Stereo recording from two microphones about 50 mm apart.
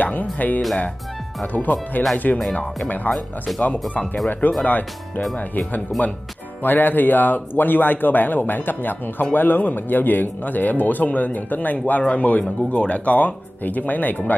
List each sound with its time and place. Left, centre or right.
0.0 s speech: left
4.3 s speech: left